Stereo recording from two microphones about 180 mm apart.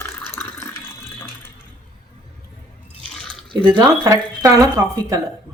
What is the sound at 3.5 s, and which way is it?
Speech, 25° right (ahead or behind).